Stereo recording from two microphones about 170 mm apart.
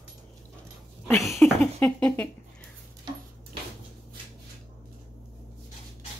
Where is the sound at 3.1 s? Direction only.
25° right (ahead or behind).